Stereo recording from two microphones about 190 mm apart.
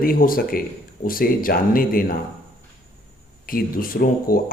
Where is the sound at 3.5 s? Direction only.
50° left (ahead or behind).